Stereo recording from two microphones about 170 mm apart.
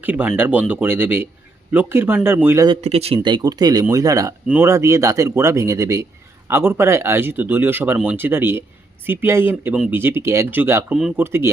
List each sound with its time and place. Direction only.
0.0 s speech: 10° right (ahead or behind)
2.8 s speech: 35° right (ahead or behind)
3.2 s speech: 25° right (ahead or behind)